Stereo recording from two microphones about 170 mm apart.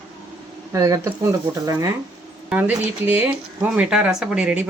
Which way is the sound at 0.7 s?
20° right (ahead or behind).